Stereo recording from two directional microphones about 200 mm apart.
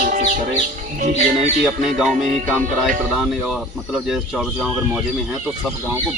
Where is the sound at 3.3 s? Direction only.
Centre (ahead or behind).